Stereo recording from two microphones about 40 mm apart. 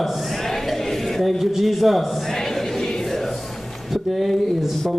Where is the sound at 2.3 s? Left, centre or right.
Centre.